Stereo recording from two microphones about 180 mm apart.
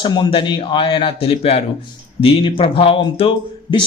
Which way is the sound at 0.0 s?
25° left (ahead or behind).